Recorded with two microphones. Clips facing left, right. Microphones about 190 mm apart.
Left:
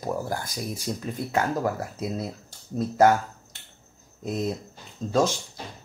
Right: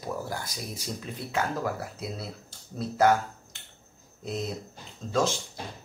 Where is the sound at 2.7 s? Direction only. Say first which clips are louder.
Left 4 dB; 45° left (ahead or behind).